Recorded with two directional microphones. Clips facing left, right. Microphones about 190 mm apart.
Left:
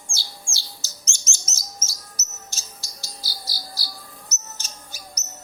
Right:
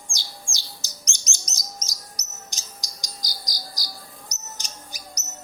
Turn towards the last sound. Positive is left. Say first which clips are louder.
# right 1 dB
turn(degrees=-15)  # may be behind; listen again after turning